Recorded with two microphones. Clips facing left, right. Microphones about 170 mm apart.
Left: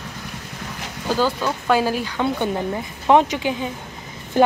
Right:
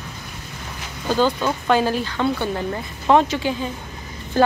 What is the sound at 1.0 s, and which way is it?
Speech, 5° left (ahead or behind).